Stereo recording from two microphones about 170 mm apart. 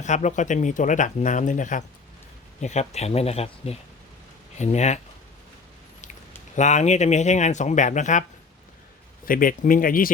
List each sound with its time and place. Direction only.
0.0 s speech: 45° left (ahead or behind)
6.6 s speech: 45° left (ahead or behind)
9.2 s speech: 55° left (ahead or behind)